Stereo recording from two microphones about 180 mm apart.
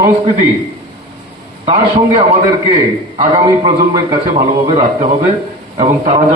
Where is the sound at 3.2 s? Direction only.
25° right (ahead or behind).